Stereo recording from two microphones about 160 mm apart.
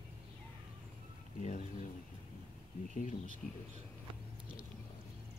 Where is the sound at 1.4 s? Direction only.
50° left (ahead or behind).